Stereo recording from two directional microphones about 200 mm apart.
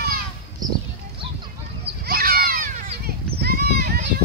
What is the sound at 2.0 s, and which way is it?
Children playing, 50° right (ahead or behind).